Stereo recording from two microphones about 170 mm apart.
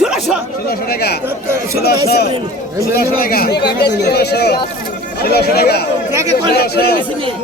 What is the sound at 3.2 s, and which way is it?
Speech, 60° left (ahead or behind).